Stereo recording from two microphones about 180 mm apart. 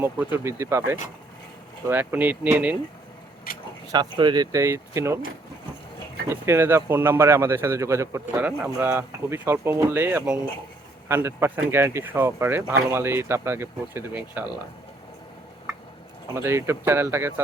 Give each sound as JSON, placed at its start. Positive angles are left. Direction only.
{"t": 0.0, "sound": "speech", "side_deg": -10}
{"t": 4.2, "sound": "speech", "side_deg": -25}
{"t": 6.2, "sound": "speech", "side_deg": -15}
{"t": 16.3, "sound": "speech", "side_deg": -15}